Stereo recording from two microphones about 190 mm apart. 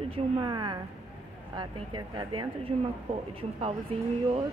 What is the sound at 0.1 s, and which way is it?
A woman's voice, 20° right (ahead or behind).